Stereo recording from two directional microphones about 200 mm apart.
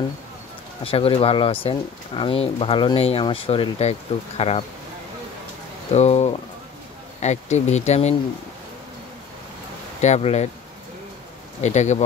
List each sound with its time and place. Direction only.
0.8 s speech: 30° left (ahead or behind)
5.9 s speech: 35° left (ahead or behind)
9.9 s speech: 35° left (ahead or behind)
11.6 s speech: 35° left (ahead or behind)